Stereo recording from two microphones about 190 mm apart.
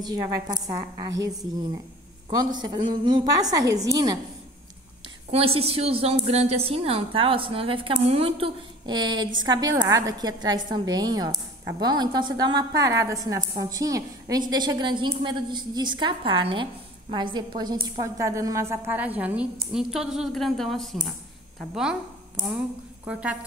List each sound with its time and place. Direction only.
0.0 s a woman's voice: 20° right (ahead or behind)
2.2 s a woman's voice: 20° right (ahead or behind)
5.3 s a woman's voice: 30° right (ahead or behind); by 21.9 s 5° right (ahead or behind)
23.1 s a woman's voice: 5° right (ahead or behind)